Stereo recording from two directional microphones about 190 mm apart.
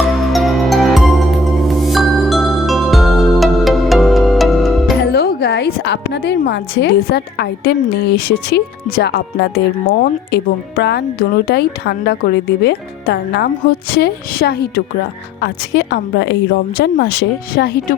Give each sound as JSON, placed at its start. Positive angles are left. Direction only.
{"t": 0.1, "sound": "music", "side_deg": 0}
{"t": 4.9, "sound": "a woman's voice", "side_deg": 55}